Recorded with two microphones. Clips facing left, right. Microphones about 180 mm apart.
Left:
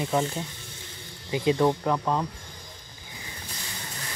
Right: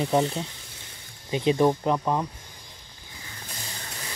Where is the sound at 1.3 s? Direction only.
20° right (ahead or behind).